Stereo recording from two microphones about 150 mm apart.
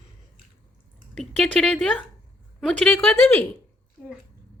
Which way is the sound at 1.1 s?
5° left (ahead or behind).